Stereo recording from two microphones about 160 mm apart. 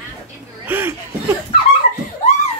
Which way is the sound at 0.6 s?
15° right (ahead or behind).